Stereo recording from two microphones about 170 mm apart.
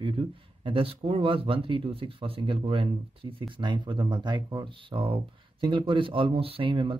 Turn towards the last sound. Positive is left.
turn(degrees=-30)  # may be behind; listen again after turning